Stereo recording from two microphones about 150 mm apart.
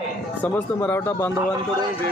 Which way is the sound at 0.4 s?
15° left (ahead or behind).